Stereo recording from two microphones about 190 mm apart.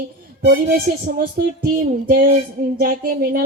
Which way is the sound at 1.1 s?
50° right (ahead or behind).